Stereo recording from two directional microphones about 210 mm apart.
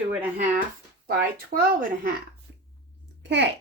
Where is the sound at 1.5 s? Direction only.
40° right (ahead or behind).